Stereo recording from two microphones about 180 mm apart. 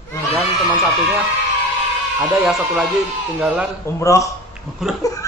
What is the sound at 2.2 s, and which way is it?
Speech, centre (ahead or behind).